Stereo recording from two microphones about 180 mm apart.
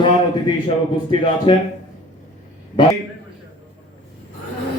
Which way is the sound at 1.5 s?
25° left (ahead or behind).